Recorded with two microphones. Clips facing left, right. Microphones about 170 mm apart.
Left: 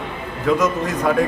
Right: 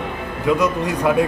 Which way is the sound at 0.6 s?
10° right (ahead or behind).